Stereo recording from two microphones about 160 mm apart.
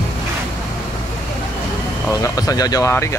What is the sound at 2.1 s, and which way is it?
Speech, 20° left (ahead or behind).